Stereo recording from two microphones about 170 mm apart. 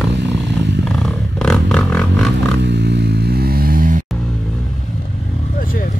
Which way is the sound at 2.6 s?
85° right.